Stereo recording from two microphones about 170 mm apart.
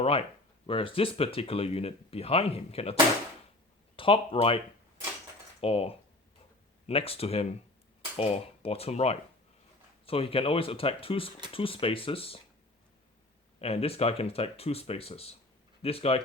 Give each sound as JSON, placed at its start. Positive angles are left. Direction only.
{"t": 0.0, "sound": "speech", "side_deg": 35}
{"t": 3.9, "sound": "speech", "side_deg": 30}
{"t": 5.5, "sound": "coin", "side_deg": 35}
{"t": 6.8, "sound": "speech", "side_deg": 35}
{"t": 13.6, "sound": "speech", "side_deg": 35}